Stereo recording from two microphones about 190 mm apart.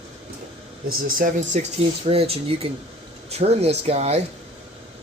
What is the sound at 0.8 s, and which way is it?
Speech, 50° right (ahead or behind).